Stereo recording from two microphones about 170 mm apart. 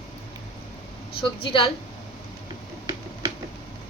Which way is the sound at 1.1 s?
30° left (ahead or behind).